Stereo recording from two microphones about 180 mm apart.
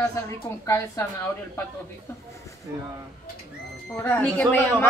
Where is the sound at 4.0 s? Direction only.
10° left (ahead or behind).